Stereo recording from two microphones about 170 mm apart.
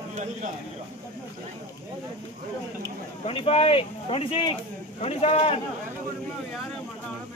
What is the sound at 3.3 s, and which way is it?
Speech, 35° left (ahead or behind).